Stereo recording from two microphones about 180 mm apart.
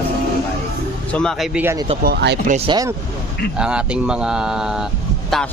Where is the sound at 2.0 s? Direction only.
65° right (ahead or behind).